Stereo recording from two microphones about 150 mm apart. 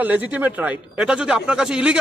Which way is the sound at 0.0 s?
10° right (ahead or behind).